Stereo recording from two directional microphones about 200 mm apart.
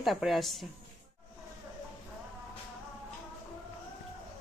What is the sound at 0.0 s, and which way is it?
Speech, centre (ahead or behind).